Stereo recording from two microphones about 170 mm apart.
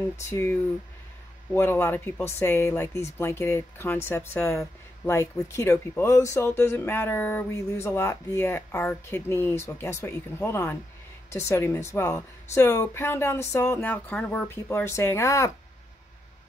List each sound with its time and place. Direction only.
0.3 s speech: 15° left (ahead or behind)